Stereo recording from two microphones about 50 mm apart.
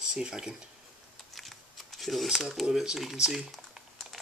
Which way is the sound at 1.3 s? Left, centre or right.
Centre.